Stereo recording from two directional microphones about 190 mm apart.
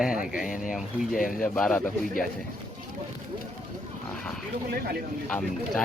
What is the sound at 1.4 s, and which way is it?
Speech, 5° left (ahead or behind).